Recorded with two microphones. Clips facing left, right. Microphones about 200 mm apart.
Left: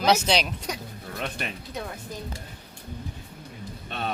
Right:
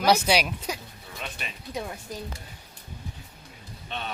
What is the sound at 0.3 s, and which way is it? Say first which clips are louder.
Speech: right 1 dB; 5° right (ahead or behind).